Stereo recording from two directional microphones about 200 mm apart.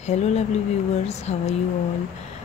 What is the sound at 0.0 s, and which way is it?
Speech, 35° left (ahead or behind).